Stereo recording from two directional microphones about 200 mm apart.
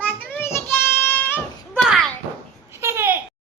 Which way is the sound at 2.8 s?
10° right (ahead or behind).